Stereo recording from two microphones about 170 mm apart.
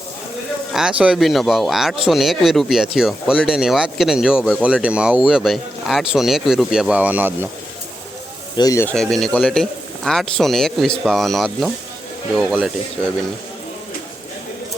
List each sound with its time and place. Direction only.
0.7 s speech: 5° right (ahead or behind)
8.5 s speech: 20° left (ahead or behind)
9.0 s speech: 5° left (ahead or behind)